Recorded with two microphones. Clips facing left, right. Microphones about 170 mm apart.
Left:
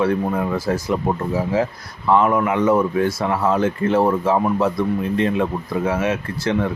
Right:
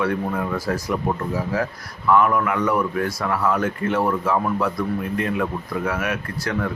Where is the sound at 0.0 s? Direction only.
25° left (ahead or behind).